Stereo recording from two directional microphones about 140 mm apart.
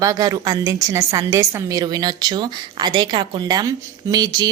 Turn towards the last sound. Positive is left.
turn(degrees=-30)  # may be behind; listen again after turning